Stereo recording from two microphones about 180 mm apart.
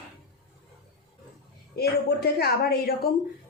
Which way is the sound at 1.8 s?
60° left (ahead or behind).